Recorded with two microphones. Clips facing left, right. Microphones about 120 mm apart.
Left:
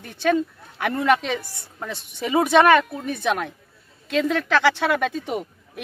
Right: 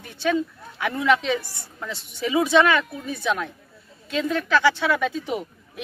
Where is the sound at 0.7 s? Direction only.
55° left (ahead or behind).